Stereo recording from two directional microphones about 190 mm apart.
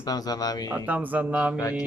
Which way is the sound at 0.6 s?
10° right (ahead or behind).